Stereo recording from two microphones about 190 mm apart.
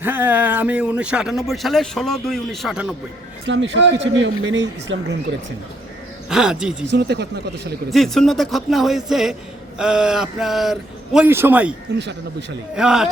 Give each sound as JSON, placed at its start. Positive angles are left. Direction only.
{"t": 0.0, "sound": "speech", "side_deg": -10}
{"t": 3.4, "sound": "speech", "side_deg": -70}
{"t": 6.2, "sound": "speech", "side_deg": -5}
{"t": 6.9, "sound": "speech", "side_deg": -60}
{"t": 7.9, "sound": "speech", "side_deg": 0}
{"t": 11.9, "sound": "speech", "side_deg": -65}
{"t": 12.7, "sound": "speech", "side_deg": -5}